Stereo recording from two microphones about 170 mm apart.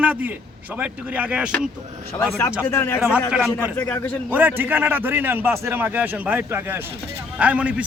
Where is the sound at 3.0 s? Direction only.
5° right (ahead or behind).